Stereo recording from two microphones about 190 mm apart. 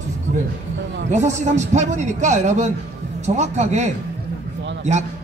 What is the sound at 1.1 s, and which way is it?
Speech, 40° right (ahead or behind).